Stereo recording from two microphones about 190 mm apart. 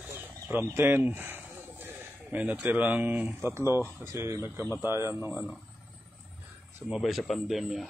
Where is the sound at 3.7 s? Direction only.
10° right (ahead or behind).